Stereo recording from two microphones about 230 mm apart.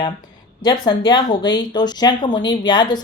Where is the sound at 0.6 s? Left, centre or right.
Centre.